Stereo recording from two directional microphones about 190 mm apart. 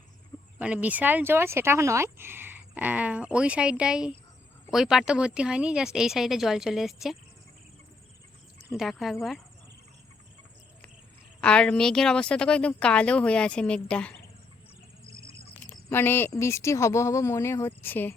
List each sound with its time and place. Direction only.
0.6 s speech: 5° right (ahead or behind)
8.7 s speech: centre (ahead or behind)
11.3 s speech: 5° left (ahead or behind)
15.0 s bird: 15° right (ahead or behind)
15.7 s speech: 10° left (ahead or behind)